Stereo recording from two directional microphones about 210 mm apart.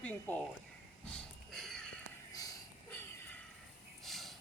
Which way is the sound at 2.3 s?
15° left (ahead or behind).